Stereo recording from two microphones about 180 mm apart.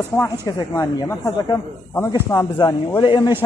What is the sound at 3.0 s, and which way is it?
Speech, 25° left (ahead or behind).